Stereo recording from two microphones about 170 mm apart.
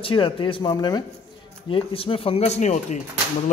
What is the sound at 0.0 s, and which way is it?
A man's voice, 30° left (ahead or behind).